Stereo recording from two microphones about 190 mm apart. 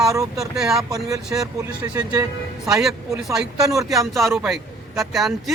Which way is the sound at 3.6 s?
20° right (ahead or behind).